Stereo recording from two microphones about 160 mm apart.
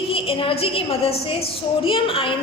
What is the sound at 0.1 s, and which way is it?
A woman's voice, 35° left (ahead or behind).